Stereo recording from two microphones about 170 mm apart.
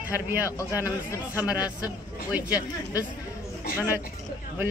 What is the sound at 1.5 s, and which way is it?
Speech, 25° left (ahead or behind).